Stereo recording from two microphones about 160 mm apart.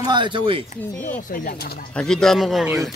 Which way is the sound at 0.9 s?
10° left (ahead or behind).